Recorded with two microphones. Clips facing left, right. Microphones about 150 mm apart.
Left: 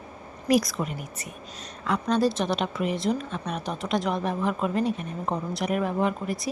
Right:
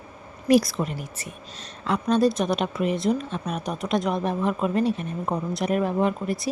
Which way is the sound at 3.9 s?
20° right (ahead or behind).